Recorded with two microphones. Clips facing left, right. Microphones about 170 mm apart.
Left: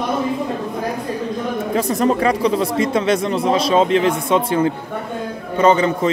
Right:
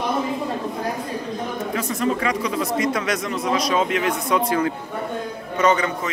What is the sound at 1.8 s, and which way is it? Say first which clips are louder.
Speech: left 6 dB; 35° left (ahead or behind).